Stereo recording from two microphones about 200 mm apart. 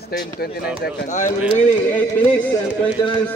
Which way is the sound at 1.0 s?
35° left (ahead or behind).